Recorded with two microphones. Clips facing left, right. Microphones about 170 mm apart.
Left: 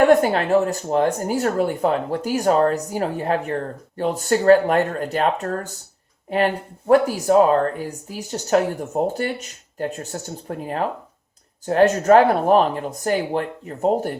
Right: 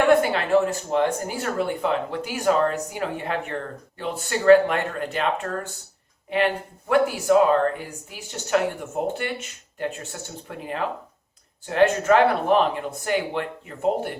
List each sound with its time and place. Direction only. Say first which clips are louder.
0.1 s speech: left 3 dB; 40° left (ahead or behind)